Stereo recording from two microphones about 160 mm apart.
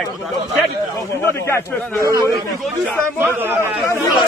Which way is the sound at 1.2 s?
15° left (ahead or behind).